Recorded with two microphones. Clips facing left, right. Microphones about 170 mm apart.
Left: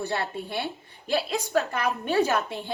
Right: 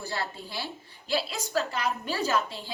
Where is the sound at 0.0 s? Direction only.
60° left (ahead or behind).